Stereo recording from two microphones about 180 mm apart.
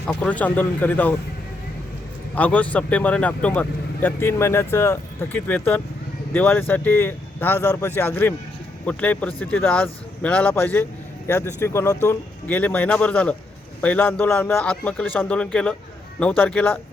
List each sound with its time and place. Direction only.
0.1 s speech: 10° left (ahead or behind)
2.3 s speech: 10° left (ahead or behind)